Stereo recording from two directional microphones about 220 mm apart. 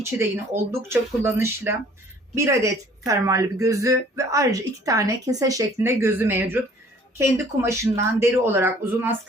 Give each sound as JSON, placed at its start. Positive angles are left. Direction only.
{"t": 0.0, "sound": "a woman's voice", "side_deg": -10}